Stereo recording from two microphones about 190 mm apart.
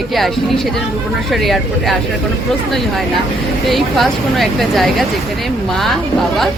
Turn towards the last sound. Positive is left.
turn(degrees=0)  # may be behind; listen again after turning